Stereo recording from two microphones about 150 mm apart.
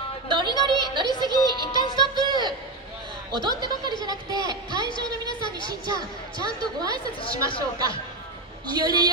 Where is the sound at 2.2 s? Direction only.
30° right (ahead or behind).